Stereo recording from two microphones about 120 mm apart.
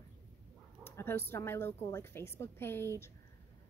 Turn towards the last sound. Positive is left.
turn(degrees=20)  # may be behind; listen again after turning